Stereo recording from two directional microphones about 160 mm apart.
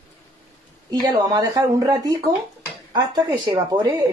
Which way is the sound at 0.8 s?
25° right (ahead or behind).